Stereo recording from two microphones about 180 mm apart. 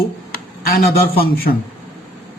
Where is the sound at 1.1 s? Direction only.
55° left (ahead or behind).